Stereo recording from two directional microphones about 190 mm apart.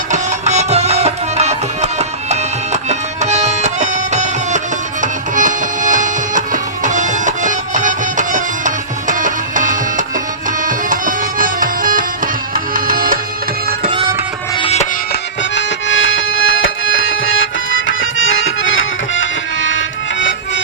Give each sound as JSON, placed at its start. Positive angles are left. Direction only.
{"t": 0.1, "sound": "music", "side_deg": -35}
{"t": 13.9, "sound": "music", "side_deg": -25}
{"t": 14.5, "sound": "music", "side_deg": 30}
{"t": 15.1, "sound": "music", "side_deg": 80}